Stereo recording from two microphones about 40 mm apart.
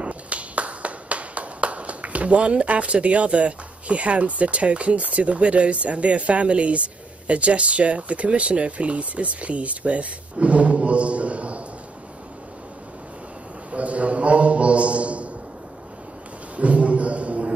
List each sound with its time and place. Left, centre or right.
0.0 s clapping: right
7.2 s speech: right
13.7 s a man's voice: right
16.5 s a sound: right